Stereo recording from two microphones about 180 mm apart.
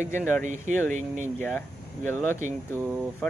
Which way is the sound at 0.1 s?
10° left (ahead or behind).